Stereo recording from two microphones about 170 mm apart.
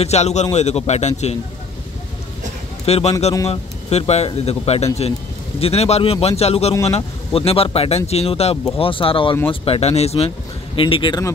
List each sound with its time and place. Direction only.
0.0 s speech: 40° left (ahead or behind)
2.8 s a man's voice: 40° left (ahead or behind)